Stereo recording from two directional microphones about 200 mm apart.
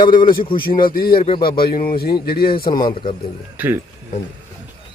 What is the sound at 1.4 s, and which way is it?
A man's voice, 50° left (ahead or behind).